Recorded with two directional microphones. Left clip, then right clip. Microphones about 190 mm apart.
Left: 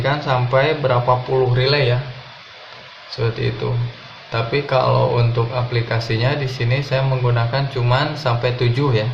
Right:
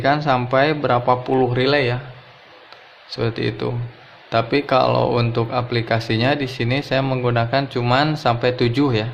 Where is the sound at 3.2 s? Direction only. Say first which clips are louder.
Even; 55° right (ahead or behind).